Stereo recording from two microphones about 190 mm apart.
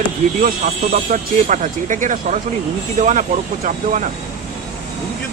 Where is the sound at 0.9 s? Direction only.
40° right (ahead or behind).